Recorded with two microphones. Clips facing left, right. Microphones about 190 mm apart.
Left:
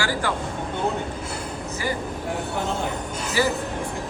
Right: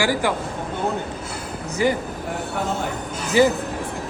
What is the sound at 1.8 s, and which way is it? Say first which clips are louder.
Speech: right 8 dB; 20° right (ahead or behind).